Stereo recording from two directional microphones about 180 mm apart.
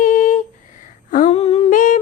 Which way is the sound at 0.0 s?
45° left (ahead or behind).